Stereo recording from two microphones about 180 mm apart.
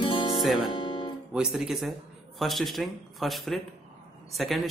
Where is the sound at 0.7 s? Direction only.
25° left (ahead or behind).